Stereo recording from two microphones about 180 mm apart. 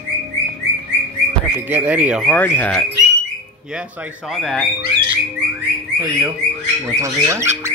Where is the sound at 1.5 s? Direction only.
10° right (ahead or behind).